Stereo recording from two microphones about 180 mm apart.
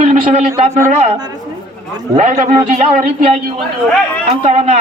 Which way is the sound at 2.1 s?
45° right (ahead or behind).